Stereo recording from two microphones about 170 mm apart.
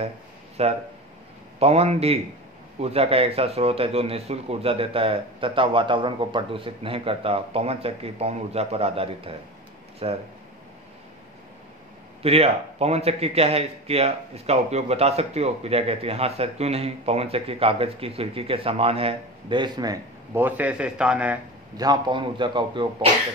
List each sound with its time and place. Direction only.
0.6 s a man's voice: 35° right (ahead or behind)
12.2 s a man's voice: 35° right (ahead or behind)
20.3 s a man's voice: 10° right (ahead or behind)
21.7 s a man's voice: 25° right (ahead or behind)